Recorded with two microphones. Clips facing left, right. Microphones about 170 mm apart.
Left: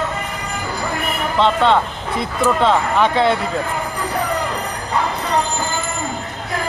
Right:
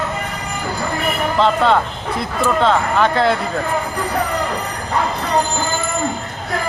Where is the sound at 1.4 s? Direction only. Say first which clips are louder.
Even; 5° right (ahead or behind).